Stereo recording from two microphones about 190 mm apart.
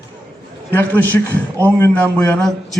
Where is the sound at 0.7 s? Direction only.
10° left (ahead or behind).